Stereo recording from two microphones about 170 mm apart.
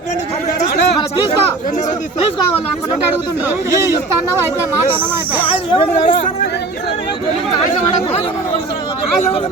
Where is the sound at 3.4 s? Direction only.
10° right (ahead or behind).